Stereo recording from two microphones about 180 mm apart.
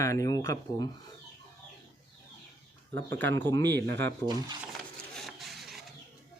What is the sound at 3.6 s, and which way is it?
Speech, 70° right (ahead or behind).